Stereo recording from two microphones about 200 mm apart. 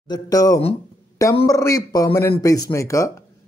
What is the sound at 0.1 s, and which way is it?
Speech, 20° left (ahead or behind).